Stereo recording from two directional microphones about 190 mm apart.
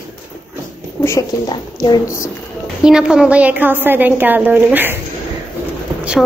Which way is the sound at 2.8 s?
5° right (ahead or behind).